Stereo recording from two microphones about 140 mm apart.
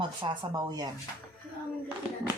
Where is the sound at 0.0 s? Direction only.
35° right (ahead or behind).